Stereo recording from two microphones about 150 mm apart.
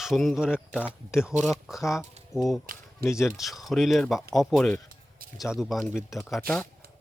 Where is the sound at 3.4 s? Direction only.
Centre (ahead or behind).